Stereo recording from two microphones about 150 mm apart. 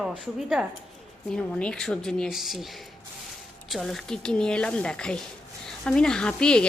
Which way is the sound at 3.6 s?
Centre (ahead or behind).